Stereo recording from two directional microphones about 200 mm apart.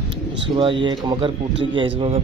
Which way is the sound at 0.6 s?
25° right (ahead or behind).